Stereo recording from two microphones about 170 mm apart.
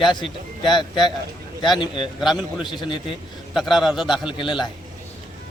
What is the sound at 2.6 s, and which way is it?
Speech, 30° left (ahead or behind).